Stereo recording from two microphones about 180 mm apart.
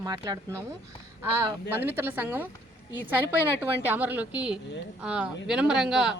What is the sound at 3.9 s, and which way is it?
A man's voice, 10° right (ahead or behind).